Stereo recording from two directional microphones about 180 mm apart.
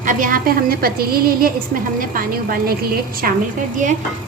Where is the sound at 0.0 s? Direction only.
50° right (ahead or behind).